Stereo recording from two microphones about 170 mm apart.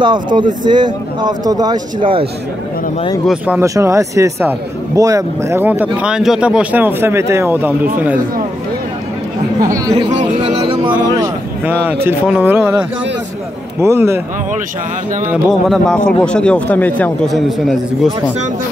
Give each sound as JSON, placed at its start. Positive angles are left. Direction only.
{"t": 0.0, "sound": "speech", "side_deg": -25}
{"t": 3.3, "sound": "a man's voice", "side_deg": -5}
{"t": 3.6, "sound": "a man's voice", "side_deg": -20}
{"t": 9.6, "sound": "speech", "side_deg": -20}
{"t": 10.5, "sound": "music", "side_deg": -30}
{"t": 11.6, "sound": "a man's voice", "side_deg": -10}
{"t": 15.4, "sound": "a man's voice", "side_deg": 0}